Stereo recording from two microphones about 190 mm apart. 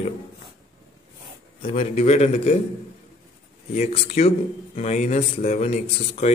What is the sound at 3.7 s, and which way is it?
A man's voice, 35° left (ahead or behind).